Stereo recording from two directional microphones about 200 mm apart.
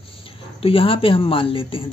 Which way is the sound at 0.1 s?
25° left (ahead or behind).